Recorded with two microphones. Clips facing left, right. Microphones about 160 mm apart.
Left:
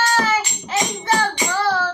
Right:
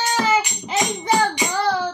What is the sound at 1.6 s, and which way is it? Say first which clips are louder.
Child singing: left 1 dB; 15° right (ahead or behind).